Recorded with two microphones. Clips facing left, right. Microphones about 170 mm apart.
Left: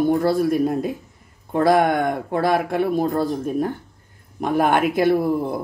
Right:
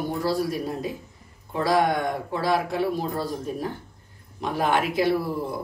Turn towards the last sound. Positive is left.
turn(degrees=55)  # may be behind; listen again after turning